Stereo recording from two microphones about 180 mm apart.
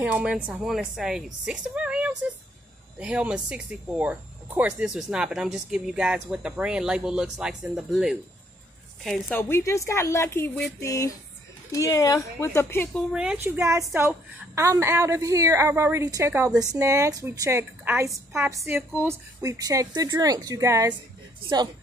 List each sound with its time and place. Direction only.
0.0 s speech: 5° right (ahead or behind)
9.4 s speech: 15° left (ahead or behind)
13.1 s a woman's voice: 5° right (ahead or behind)